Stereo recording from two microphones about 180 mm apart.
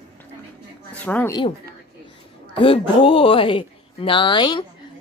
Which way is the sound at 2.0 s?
30° left (ahead or behind).